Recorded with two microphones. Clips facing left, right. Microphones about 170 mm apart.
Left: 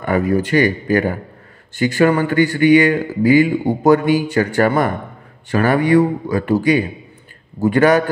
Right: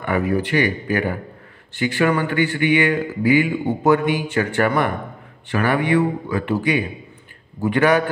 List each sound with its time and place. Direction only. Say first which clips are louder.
0.0 s speech: left 4 dB; 40° left (ahead or behind)